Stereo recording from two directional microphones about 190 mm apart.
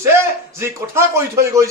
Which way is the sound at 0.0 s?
15° right (ahead or behind).